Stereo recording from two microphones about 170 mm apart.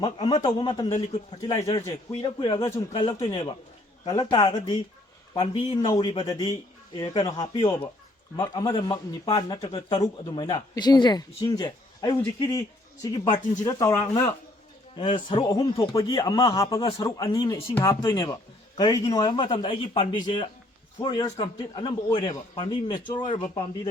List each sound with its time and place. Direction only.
0.0 s a woman's voice: 30° left (ahead or behind)
0.9 s a man's voice: 45° left (ahead or behind)
1.4 s a woman's voice: 20° left (ahead or behind)
2.6 s a woman's voice: 20° left (ahead or behind); by 7.9 s 35° left (ahead or behind)
8.4 s a woman's voice: 20° left (ahead or behind)